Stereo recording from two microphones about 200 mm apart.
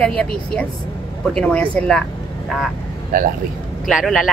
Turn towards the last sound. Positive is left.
turn(degrees=0)  # may be behind; listen again after turning